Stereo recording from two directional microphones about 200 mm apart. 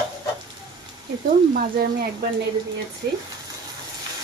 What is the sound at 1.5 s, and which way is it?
Speech, 45° right (ahead or behind).